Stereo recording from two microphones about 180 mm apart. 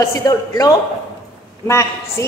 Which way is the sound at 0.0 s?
20° left (ahead or behind).